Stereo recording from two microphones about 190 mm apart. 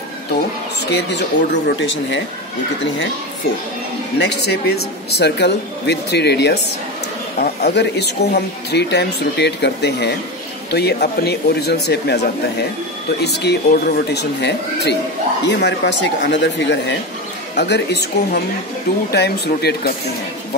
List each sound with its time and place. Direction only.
1.0 s speech: 65° left (ahead or behind)
4.2 s speech: 60° left (ahead or behind)